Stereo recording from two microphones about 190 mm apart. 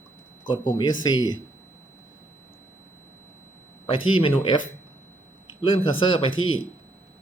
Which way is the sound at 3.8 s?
25° left (ahead or behind).